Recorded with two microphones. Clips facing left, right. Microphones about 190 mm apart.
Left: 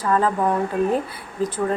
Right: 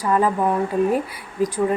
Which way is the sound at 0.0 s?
10° right (ahead or behind).